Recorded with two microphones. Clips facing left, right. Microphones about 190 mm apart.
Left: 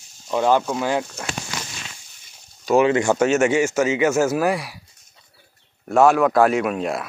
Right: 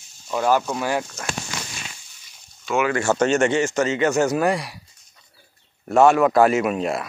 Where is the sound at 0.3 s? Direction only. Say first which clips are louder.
Left 2 dB; 20° left (ahead or behind).